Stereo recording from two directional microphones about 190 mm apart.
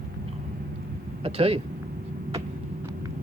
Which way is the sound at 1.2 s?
30° right (ahead or behind).